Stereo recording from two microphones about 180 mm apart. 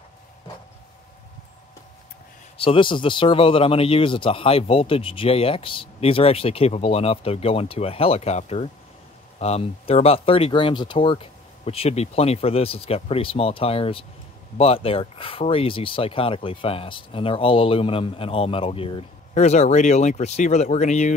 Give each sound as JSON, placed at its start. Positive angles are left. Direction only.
{"t": 2.5, "sound": "speech", "side_deg": 30}